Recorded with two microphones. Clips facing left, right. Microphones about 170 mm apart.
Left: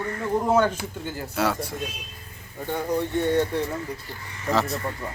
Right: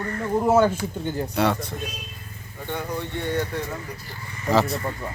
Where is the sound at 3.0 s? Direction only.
30° left (ahead or behind).